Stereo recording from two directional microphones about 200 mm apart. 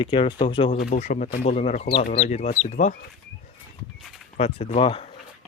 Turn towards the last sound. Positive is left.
turn(degrees=30)  # may be behind; listen again after turning